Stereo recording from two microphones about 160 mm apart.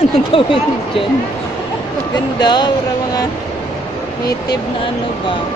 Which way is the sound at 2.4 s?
25° left (ahead or behind).